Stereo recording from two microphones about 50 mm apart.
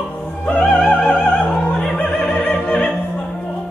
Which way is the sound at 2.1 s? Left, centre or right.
Centre.